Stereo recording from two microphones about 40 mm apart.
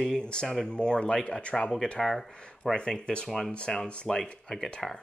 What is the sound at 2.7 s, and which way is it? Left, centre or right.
Speech, left.